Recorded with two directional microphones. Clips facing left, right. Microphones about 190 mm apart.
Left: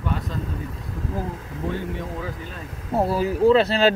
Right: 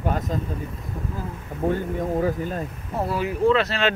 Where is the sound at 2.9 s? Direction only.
30° left (ahead or behind).